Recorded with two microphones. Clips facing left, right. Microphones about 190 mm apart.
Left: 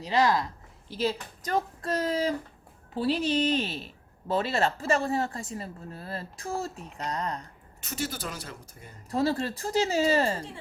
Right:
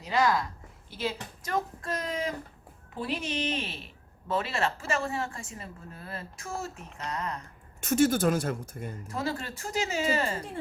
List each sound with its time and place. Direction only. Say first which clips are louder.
0.0 s a woman's voice: left 2 dB; 25° left (ahead or behind)
7.8 s speech: right 11 dB; 50° right (ahead or behind)
9.0 s a woman's voice: left 8 dB; 35° left (ahead or behind)